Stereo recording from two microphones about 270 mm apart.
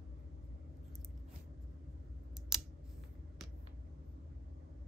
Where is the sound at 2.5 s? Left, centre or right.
Centre.